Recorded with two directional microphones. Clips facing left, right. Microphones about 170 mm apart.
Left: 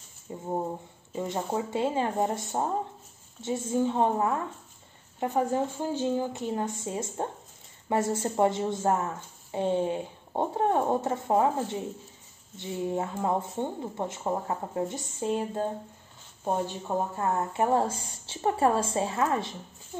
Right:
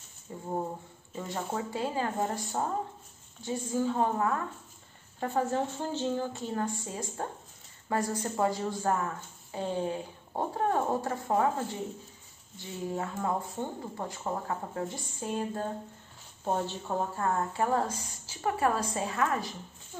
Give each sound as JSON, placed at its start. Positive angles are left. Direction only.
{"t": 0.3, "sound": "a woman's voice", "side_deg": 20}